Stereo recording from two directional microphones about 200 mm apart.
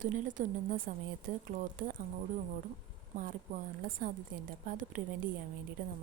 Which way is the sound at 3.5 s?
40° right (ahead or behind).